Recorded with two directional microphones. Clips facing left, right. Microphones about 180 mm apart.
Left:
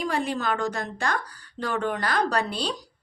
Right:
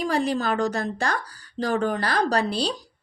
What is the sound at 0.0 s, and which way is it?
Speech, 35° right (ahead or behind).